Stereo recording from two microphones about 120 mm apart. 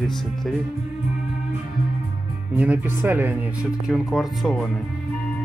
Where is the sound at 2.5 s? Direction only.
15° right (ahead or behind).